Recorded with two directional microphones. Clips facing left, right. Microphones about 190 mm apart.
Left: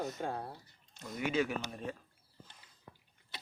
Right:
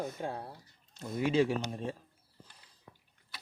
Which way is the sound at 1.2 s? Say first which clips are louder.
Right 5 dB; 30° right (ahead or behind).